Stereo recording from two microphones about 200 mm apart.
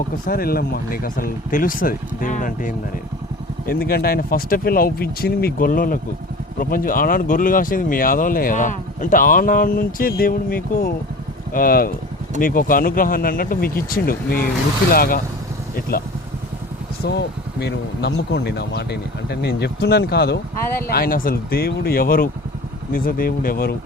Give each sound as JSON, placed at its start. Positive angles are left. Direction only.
{"t": 0.3, "sound": "speech", "side_deg": 50}
{"t": 15.7, "sound": "vehicle", "side_deg": 50}
{"t": 17.0, "sound": "speech", "side_deg": 55}